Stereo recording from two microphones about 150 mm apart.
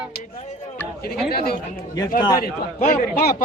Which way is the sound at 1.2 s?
90° left.